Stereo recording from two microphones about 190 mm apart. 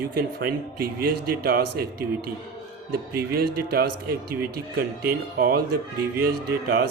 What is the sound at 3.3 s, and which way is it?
Speech, 55° right (ahead or behind).